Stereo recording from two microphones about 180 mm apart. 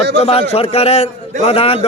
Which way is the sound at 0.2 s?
35° left (ahead or behind).